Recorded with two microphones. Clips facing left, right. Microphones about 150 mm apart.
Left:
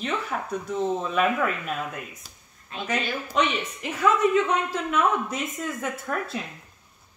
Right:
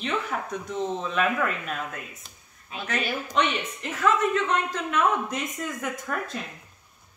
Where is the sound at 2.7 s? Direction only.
10° right (ahead or behind).